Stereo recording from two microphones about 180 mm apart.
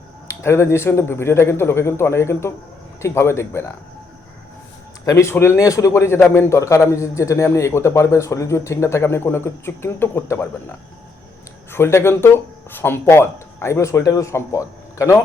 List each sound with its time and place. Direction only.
0.3 s a man's voice: 15° left (ahead or behind)
5.0 s a man's voice: 15° left (ahead or behind)